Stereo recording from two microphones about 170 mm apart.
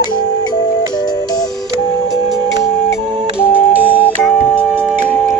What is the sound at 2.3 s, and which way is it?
Music, 20° left (ahead or behind).